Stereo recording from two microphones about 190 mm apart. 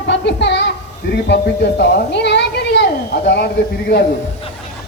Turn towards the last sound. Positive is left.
turn(degrees=60)  # may be behind; listen again after turning